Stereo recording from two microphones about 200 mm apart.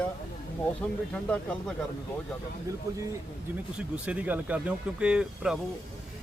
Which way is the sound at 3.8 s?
5° right (ahead or behind).